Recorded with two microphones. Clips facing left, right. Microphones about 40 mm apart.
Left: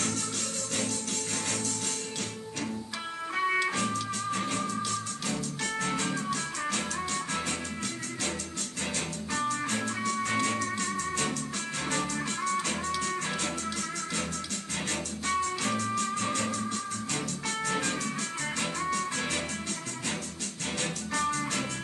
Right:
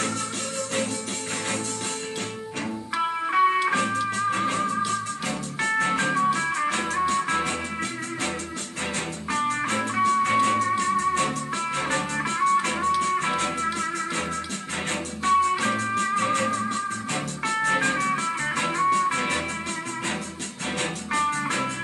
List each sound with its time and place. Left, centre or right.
3.0 s music: right
9.3 s music: right
14.9 s music: right
20.8 s music: right